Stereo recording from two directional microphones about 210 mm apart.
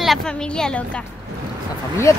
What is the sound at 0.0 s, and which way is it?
Speech, centre (ahead or behind).